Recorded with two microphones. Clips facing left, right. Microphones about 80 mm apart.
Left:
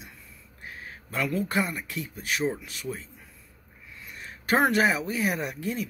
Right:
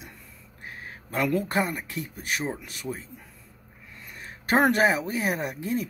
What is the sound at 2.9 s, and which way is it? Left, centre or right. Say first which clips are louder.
Speech: right 1 dB; right.